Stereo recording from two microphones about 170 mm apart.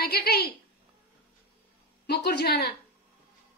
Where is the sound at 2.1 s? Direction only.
70° left (ahead or behind).